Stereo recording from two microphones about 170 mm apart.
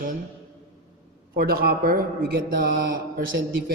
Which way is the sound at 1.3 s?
60° right (ahead or behind).